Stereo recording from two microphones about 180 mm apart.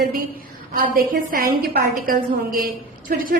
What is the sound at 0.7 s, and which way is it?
A woman's voice, 55° right (ahead or behind).